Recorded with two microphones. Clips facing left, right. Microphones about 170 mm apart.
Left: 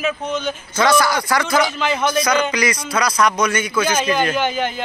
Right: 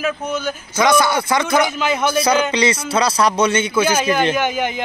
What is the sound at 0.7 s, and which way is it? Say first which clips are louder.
Speech: right 1 dB; 20° right (ahead or behind).